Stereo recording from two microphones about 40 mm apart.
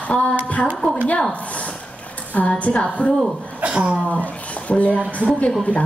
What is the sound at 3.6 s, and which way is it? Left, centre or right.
Speech, right.